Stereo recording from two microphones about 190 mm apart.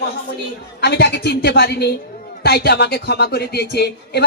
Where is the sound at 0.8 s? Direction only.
60° left (ahead or behind).